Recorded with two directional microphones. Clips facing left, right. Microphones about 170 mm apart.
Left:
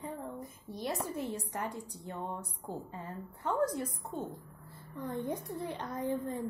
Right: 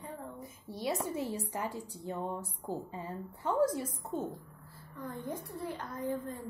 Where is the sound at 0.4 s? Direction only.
Centre (ahead or behind).